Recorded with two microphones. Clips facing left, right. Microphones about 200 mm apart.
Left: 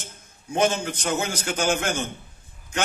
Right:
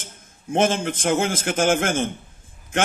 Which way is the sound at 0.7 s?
90° right.